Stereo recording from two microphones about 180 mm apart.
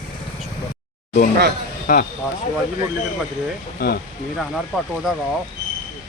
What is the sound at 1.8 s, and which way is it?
Speech, 50° left (ahead or behind).